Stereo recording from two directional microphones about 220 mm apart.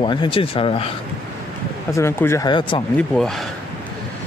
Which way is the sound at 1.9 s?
10° left (ahead or behind).